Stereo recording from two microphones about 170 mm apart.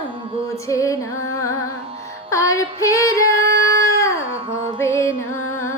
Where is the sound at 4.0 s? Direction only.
15° left (ahead or behind).